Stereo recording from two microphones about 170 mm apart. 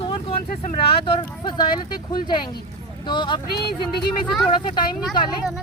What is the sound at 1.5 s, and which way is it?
Speech, 25° left (ahead or behind).